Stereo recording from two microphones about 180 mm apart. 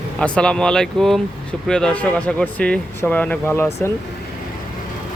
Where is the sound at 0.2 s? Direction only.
5° left (ahead or behind).